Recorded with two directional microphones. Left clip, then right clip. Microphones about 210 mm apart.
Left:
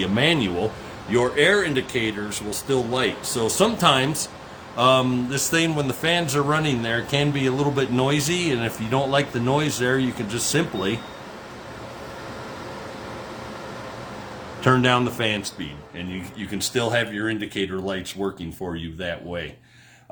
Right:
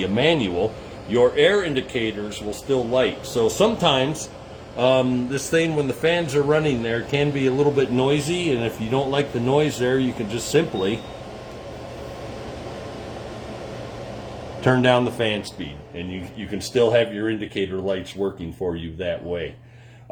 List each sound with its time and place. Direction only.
0.0 s a man's voice: 35° left (ahead or behind)
14.6 s a man's voice: 25° left (ahead or behind); by 19.5 s 45° left (ahead or behind)